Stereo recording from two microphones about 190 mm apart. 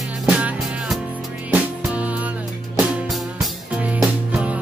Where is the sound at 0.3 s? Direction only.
5° right (ahead or behind).